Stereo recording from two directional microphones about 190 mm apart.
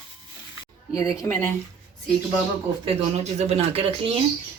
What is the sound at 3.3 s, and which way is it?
Speech, 30° right (ahead or behind).